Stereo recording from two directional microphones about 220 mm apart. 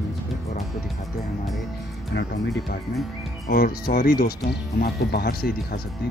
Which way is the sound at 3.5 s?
40° left (ahead or behind).